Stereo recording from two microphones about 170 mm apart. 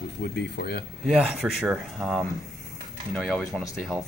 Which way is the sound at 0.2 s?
70° left (ahead or behind).